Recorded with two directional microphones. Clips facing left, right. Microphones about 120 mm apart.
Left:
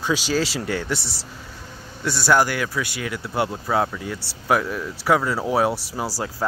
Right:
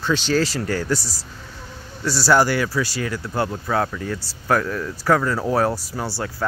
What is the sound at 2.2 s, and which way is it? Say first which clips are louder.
Speech: right 2 dB; 5° right (ahead or behind).